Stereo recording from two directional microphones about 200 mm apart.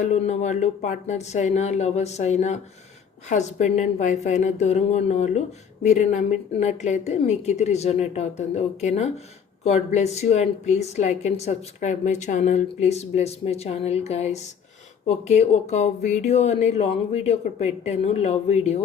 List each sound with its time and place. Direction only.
0.0 s a woman's voice: 35° left (ahead or behind)